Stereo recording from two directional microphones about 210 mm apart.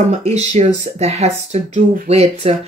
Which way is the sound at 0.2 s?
30° right (ahead or behind).